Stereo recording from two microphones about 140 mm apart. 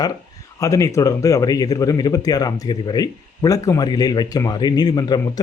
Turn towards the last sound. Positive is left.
turn(degrees=30)  # may be behind; listen again after turning